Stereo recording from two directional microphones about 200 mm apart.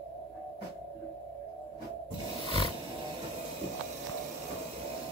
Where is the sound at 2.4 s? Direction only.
30° left (ahead or behind).